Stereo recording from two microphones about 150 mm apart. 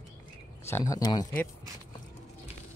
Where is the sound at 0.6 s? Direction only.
20° left (ahead or behind).